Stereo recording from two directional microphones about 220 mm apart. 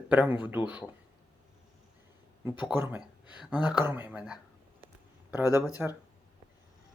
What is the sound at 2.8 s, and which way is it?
Speech, 10° right (ahead or behind).